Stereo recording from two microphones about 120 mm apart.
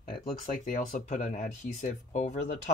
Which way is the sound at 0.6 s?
85° left.